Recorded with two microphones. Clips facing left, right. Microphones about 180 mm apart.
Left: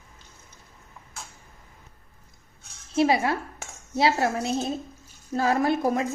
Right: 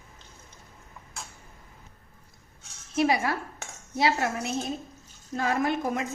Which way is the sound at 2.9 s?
25° left (ahead or behind).